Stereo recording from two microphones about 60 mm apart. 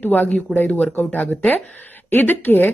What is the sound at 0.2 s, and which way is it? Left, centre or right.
Speech, centre.